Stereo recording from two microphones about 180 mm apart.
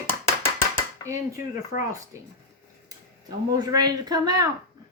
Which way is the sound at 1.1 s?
15° right (ahead or behind).